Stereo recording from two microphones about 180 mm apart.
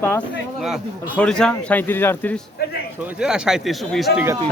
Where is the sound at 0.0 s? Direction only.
10° left (ahead or behind).